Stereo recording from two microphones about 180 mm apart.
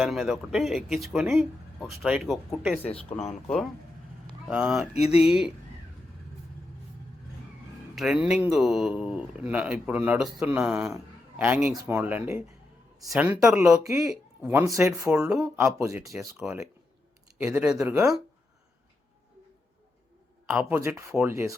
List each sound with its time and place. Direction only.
0.0 s speech: centre (ahead or behind)
3.1 s speech: 35° left (ahead or behind)
4.4 s speech: 5° right (ahead or behind)
4.9 s speech: 35° left (ahead or behind)
5.2 s speech: 5° right (ahead or behind)
7.9 s a man's voice: 5° right (ahead or behind)
11.7 s a man's voice: 20° right (ahead or behind)
15.2 s speech: 5° right (ahead or behind)
15.5 s a man's voice: 15° right (ahead or behind)
20.5 s a man's voice: 10° right (ahead or behind)